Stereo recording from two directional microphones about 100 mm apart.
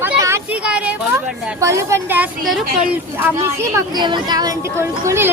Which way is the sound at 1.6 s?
30° right (ahead or behind).